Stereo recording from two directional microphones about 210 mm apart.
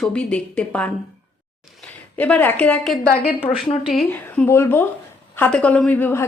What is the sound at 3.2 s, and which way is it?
Speech, 25° left (ahead or behind).